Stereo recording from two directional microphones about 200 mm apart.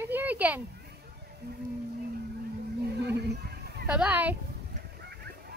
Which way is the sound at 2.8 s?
55° right (ahead or behind).